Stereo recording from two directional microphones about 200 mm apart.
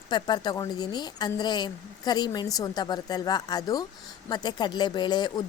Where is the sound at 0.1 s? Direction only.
20° left (ahead or behind).